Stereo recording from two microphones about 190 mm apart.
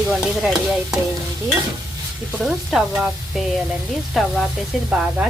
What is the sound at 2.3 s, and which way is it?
Stir, centre (ahead or behind).